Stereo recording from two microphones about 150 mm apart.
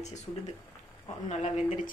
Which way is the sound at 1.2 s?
50° left (ahead or behind).